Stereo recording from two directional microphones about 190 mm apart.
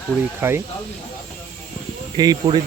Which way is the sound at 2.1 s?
20° right (ahead or behind).